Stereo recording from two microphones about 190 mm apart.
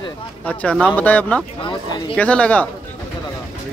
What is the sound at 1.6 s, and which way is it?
Speech, 25° left (ahead or behind).